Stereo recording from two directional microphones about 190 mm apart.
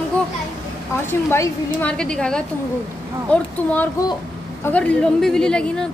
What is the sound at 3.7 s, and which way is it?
A woman's voice, 10° left (ahead or behind).